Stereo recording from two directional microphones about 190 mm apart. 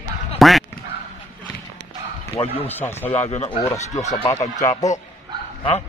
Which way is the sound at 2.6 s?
10° left (ahead or behind).